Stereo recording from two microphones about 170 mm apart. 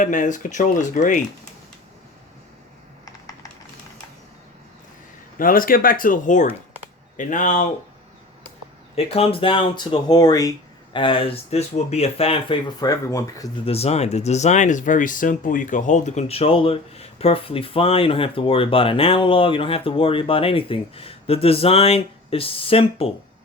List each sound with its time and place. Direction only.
0.0 s speech: 50° left (ahead or behind)
5.4 s speech: 55° left (ahead or behind)
9.0 s speech: 35° left (ahead or behind); by 13.5 s 20° left (ahead or behind)
13.7 s speech: 35° left (ahead or behind)